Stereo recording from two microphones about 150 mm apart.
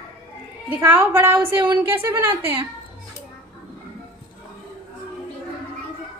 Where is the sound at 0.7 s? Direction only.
15° right (ahead or behind).